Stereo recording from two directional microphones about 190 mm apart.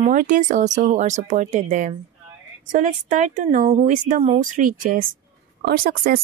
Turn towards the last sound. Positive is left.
turn(degrees=-50)  # may be behind; listen again after turning